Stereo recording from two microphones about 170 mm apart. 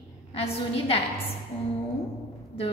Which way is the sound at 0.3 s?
35° left (ahead or behind).